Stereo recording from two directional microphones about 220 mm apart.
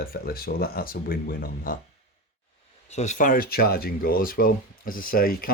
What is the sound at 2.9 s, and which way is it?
Speech, 30° left (ahead or behind).